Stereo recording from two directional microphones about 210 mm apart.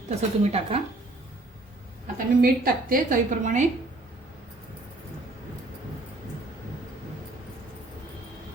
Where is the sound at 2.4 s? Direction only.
40° right (ahead or behind).